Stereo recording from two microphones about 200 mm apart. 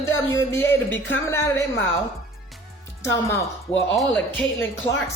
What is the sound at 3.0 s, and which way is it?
Speech, 15° left (ahead or behind).